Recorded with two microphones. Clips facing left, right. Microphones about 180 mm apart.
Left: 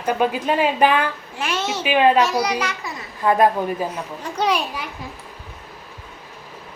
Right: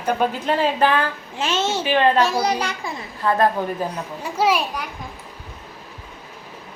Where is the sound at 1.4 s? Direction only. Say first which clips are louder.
Right 3 dB; 25° right (ahead or behind).